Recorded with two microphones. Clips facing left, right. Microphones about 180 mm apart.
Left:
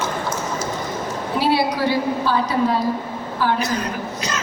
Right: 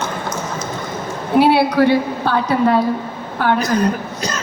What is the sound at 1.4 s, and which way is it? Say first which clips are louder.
A woman's voice: right 7 dB; 60° right (ahead or behind).